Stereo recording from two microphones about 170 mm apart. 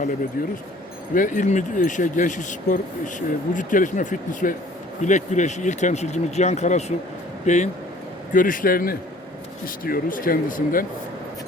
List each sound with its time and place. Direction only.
0.4 s speech: 55° left (ahead or behind)